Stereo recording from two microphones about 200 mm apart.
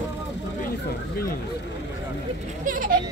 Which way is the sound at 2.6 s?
45° right (ahead or behind).